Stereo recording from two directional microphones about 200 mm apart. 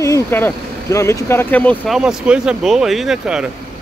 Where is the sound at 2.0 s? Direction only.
5° right (ahead or behind).